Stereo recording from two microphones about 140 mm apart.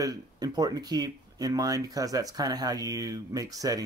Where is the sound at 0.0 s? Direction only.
25° right (ahead or behind).